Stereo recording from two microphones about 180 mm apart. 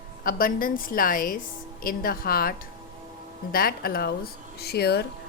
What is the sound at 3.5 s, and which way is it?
Speech, 55° left (ahead or behind).